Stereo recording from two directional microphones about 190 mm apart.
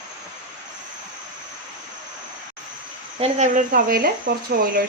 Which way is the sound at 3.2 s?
40° right (ahead or behind).